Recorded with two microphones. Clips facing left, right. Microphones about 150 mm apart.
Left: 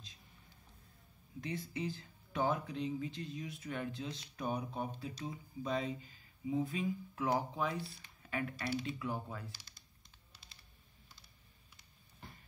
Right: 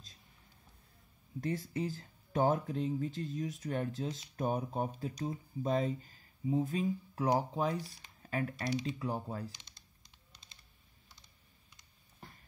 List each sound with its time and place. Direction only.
1.4 s speech: 45° right (ahead or behind)
9.5 s typing: 5° left (ahead or behind)